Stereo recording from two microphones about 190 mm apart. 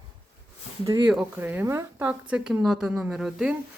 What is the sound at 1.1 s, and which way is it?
Speech, 5° right (ahead or behind).